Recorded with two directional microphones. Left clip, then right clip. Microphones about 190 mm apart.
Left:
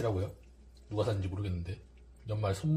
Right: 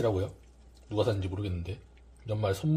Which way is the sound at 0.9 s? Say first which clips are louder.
Right 4 dB; 30° right (ahead or behind).